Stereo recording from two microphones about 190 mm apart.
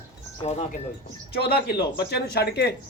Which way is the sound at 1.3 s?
55° left (ahead or behind).